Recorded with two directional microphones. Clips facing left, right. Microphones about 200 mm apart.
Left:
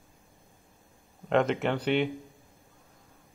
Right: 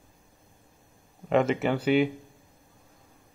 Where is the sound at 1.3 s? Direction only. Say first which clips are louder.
Right 2 dB; 5° right (ahead or behind).